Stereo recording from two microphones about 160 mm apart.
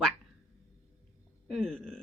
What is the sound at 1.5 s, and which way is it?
Speech, centre (ahead or behind).